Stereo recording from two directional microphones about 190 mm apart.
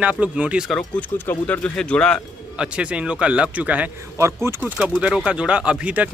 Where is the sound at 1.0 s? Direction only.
10° left (ahead or behind).